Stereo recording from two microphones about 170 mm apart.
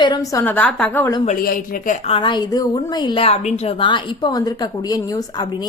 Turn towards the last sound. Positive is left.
turn(degrees=20)  # may be behind; listen again after turning